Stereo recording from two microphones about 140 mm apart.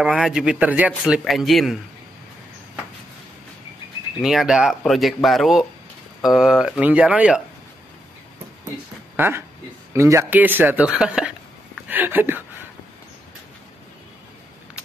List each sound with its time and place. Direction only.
0.0 s speech: 5° right (ahead or behind)
4.2 s speech: centre (ahead or behind)
8.6 s a sound: 15° right (ahead or behind)
9.9 s speech: 20° right (ahead or behind)